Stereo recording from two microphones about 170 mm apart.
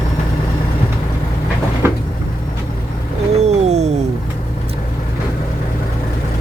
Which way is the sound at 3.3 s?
40° right (ahead or behind).